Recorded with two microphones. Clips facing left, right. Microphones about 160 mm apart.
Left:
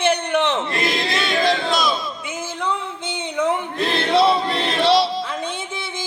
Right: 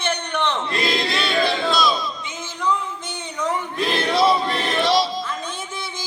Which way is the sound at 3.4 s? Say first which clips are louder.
Left 4 dB; 60° left (ahead or behind).